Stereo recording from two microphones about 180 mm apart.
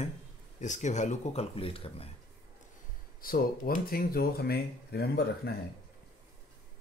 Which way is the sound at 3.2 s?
55° left (ahead or behind).